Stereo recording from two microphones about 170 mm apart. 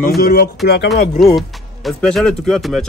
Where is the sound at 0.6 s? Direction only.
75° left (ahead or behind).